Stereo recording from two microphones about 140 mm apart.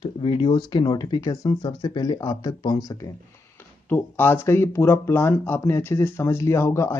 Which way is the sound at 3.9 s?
15° left (ahead or behind).